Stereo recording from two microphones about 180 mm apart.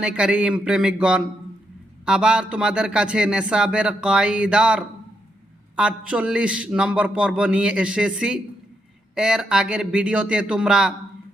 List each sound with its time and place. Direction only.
0.0 s a man's voice: 5° right (ahead or behind)